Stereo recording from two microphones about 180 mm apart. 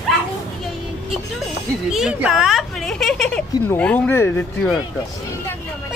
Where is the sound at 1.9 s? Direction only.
5° right (ahead or behind).